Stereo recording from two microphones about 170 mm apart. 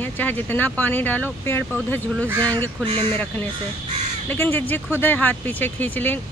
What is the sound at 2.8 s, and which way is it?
Speech, 30° right (ahead or behind).